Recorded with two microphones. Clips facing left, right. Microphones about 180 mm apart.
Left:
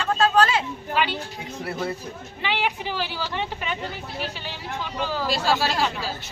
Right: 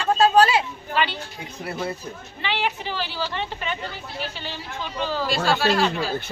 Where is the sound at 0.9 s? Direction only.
10° left (ahead or behind).